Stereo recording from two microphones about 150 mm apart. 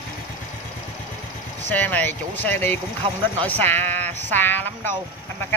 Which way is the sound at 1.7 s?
10° left (ahead or behind).